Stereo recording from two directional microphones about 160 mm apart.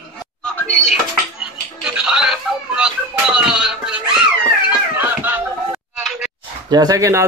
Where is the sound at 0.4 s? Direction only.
5° left (ahead or behind).